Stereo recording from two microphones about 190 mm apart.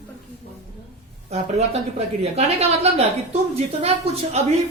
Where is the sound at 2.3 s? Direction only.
30° right (ahead or behind).